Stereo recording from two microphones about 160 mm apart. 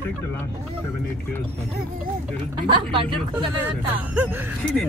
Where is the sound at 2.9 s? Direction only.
35° right (ahead or behind).